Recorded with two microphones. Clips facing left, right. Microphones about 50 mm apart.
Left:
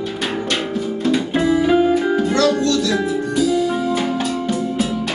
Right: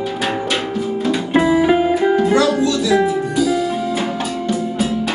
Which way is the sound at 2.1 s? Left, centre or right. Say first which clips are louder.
Right 2 dB; centre.